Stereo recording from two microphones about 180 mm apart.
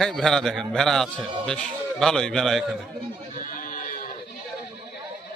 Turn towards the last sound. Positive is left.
turn(degrees=50)  # may be behind; listen again after turning